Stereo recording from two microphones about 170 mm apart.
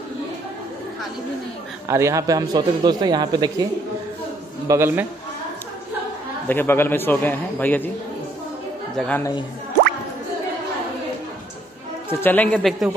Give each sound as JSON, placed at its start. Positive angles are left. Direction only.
{"t": 1.9, "sound": "speech", "side_deg": -15}
{"t": 4.6, "sound": "a man's voice", "side_deg": -15}
{"t": 6.5, "sound": "a man's voice", "side_deg": 10}
{"t": 8.9, "sound": "speech", "side_deg": 5}
{"t": 12.1, "sound": "a man's voice", "side_deg": 10}